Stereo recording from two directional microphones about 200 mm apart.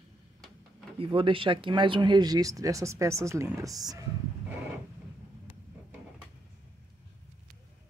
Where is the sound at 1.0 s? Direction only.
25° right (ahead or behind).